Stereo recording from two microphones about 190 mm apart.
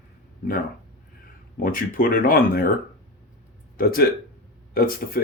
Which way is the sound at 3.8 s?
50° left (ahead or behind).